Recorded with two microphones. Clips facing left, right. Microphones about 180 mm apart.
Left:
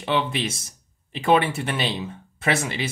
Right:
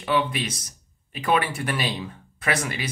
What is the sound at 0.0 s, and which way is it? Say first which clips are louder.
Speech: even; 25° left (ahead or behind).